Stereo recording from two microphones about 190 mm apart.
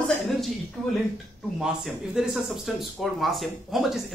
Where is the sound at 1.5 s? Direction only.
5° right (ahead or behind).